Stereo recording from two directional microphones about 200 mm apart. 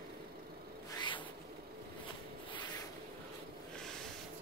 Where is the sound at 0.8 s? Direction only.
20° left (ahead or behind).